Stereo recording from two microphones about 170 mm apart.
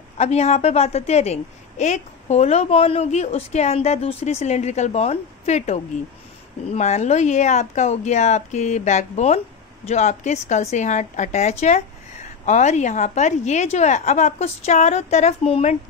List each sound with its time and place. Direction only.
0.2 s a woman's voice: 40° left (ahead or behind)